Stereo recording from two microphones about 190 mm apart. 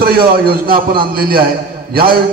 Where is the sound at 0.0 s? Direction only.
55° right (ahead or behind).